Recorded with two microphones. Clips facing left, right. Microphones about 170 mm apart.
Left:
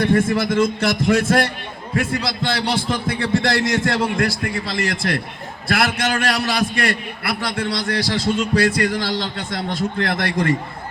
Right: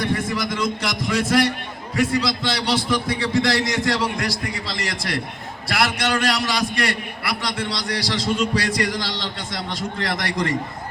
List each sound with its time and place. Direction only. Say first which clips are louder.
0.0 s a man's voice: left 6 dB; 55° left (ahead or behind)